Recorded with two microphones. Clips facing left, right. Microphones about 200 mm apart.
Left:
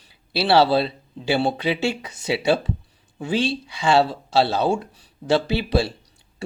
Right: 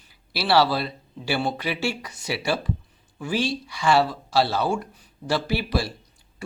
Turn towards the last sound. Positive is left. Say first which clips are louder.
# left 4 dB
turn(degrees=25)  # may be behind; listen again after turning